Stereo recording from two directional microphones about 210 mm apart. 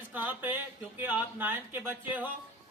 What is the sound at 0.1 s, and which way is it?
A man's voice, 10° right (ahead or behind).